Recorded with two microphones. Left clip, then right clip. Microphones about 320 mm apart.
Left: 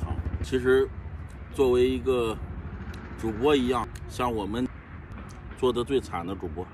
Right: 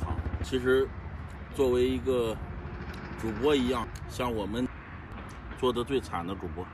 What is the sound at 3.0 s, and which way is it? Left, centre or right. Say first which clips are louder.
Vehicle: left 4 dB; right.